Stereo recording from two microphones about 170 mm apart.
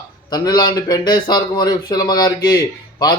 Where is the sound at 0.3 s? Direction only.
25° left (ahead or behind).